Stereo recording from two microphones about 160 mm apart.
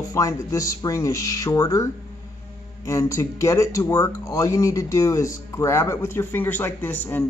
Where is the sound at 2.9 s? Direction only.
20° left (ahead or behind).